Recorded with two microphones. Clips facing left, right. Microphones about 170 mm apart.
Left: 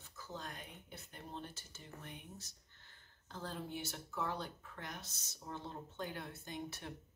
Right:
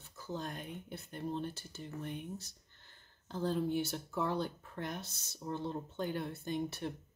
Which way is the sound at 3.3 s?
30° right (ahead or behind).